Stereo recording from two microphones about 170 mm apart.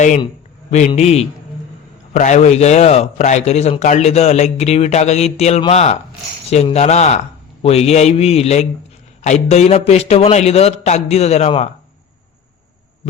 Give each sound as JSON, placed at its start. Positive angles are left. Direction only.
{"t": 0.9, "sound": "a man's voice", "side_deg": 40}